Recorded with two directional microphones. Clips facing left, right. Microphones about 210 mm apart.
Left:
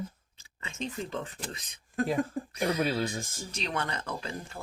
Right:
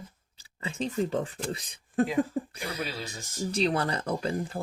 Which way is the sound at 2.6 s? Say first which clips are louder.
Left 7 dB; 55° left (ahead or behind).